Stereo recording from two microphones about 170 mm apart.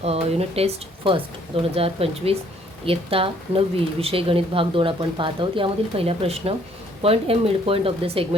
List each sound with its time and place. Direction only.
0.0 s speech: 35° right (ahead or behind)